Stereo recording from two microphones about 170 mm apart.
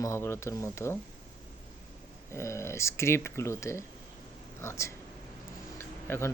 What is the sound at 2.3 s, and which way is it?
Speech, 15° left (ahead or behind).